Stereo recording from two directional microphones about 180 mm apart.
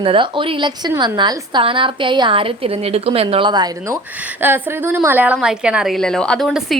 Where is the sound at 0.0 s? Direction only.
30° right (ahead or behind).